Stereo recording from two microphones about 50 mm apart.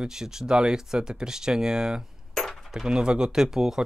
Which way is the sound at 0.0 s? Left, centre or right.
Centre.